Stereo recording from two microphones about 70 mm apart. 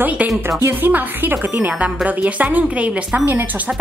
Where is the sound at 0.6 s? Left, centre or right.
Right.